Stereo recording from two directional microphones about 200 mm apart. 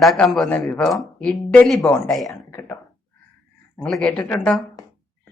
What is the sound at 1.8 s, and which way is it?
A man's voice, 15° left (ahead or behind).